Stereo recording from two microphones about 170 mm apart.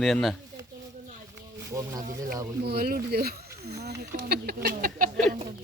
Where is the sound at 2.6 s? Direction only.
65° right (ahead or behind).